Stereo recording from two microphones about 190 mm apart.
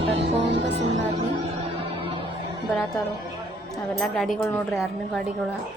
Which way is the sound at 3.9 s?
Centre (ahead or behind).